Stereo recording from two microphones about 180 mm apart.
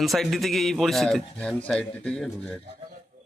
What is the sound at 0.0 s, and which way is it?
A man's voice, centre (ahead or behind).